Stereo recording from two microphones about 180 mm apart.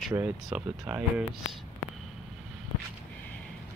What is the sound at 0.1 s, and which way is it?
Speech, 5° right (ahead or behind).